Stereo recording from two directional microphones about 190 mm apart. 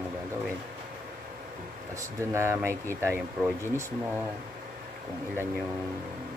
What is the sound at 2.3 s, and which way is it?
Speech, 15° right (ahead or behind).